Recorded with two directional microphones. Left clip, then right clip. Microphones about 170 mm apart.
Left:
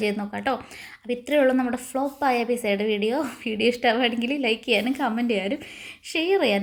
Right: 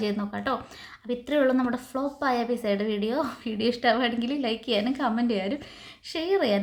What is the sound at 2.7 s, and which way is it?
Speech, 40° right (ahead or behind).